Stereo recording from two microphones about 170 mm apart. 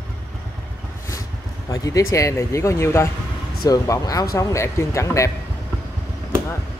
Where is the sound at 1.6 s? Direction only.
20° left (ahead or behind).